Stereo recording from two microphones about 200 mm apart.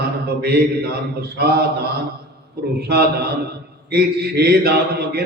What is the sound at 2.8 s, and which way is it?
Mantra, 55° right (ahead or behind).